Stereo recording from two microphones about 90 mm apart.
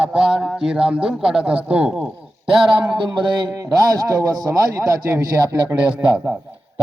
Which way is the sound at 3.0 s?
65° right (ahead or behind).